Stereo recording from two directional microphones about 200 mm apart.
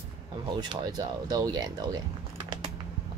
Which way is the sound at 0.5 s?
20° right (ahead or behind).